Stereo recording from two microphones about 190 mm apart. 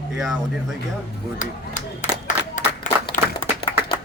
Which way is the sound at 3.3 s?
25° left (ahead or behind).